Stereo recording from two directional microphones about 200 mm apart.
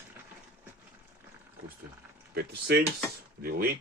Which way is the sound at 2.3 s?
55° right (ahead or behind).